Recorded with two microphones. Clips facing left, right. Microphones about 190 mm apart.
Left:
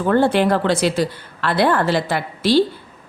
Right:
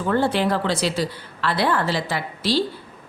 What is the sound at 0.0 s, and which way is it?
A woman's voice, 55° left (ahead or behind).